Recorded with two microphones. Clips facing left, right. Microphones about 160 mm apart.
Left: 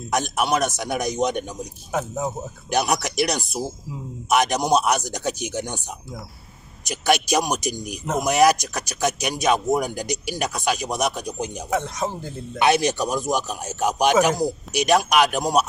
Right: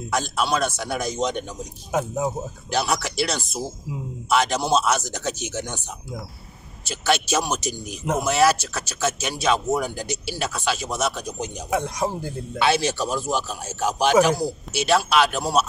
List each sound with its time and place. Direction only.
0.1 s speech: 20° left (ahead or behind)
1.9 s speech: 15° right (ahead or behind)
2.7 s speech: 15° left (ahead or behind)
6.9 s speech: 15° left (ahead or behind)
11.7 s speech: 15° right (ahead or behind)
12.5 s speech: 15° left (ahead or behind)